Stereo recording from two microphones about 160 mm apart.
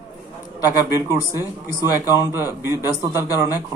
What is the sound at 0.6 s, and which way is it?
Speech, 15° right (ahead or behind).